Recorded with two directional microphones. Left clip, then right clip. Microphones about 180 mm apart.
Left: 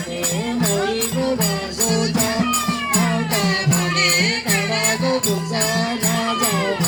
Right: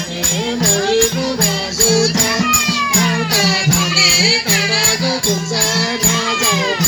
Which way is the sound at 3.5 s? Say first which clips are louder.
Right 5 dB; 50° left (ahead or behind).